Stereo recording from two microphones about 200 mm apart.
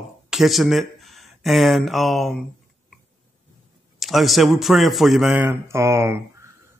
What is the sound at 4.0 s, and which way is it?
A man's voice, centre (ahead or behind).